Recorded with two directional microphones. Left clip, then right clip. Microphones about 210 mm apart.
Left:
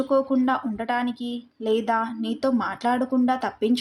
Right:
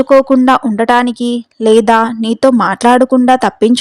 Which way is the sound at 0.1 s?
45° right (ahead or behind).